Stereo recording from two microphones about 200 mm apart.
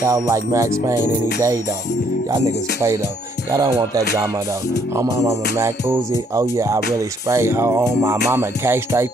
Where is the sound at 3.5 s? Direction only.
15° right (ahead or behind).